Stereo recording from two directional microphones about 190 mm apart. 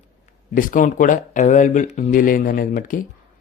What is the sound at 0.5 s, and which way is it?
Speech, 45° left (ahead or behind).